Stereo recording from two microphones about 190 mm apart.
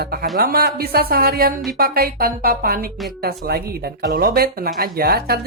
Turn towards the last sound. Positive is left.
turn(degrees=-55)  # may be behind; listen again after turning